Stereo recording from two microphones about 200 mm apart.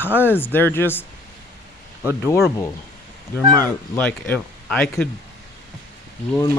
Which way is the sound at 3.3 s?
10° left (ahead or behind).